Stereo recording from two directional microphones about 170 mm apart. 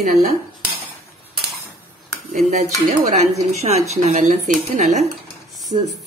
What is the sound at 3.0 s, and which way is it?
A woman's voice, 40° right (ahead or behind).